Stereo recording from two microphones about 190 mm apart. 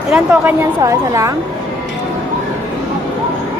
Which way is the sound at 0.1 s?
5° right (ahead or behind).